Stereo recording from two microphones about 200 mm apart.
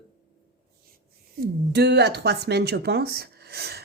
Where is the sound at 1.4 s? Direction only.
55° right (ahead or behind).